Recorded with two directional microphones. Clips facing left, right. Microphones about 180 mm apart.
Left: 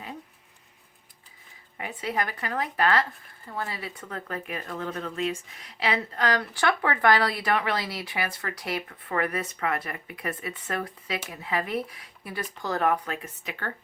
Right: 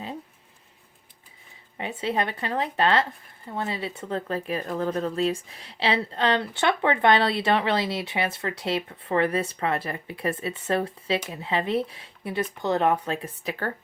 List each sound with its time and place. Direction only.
1.8 s speech: 25° right (ahead or behind)